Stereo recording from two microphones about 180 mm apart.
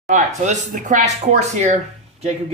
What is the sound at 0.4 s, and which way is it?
Speech, 40° right (ahead or behind).